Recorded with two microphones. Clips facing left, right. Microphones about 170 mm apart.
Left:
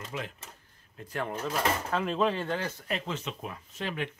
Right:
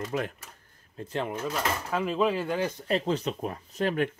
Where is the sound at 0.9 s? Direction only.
25° right (ahead or behind).